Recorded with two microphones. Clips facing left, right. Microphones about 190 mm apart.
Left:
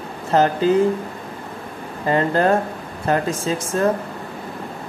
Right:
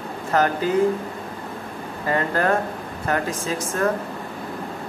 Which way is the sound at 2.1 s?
30° left (ahead or behind).